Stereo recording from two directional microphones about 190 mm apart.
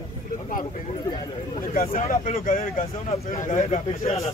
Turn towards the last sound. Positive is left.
turn(degrees=30)  # may be behind; listen again after turning